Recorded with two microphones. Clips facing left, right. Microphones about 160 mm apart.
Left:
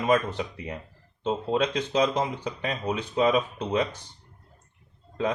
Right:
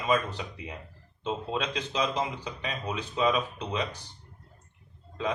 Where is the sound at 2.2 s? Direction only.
50° left (ahead or behind).